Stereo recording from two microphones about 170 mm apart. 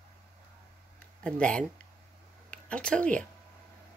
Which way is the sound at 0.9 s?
5° left (ahead or behind).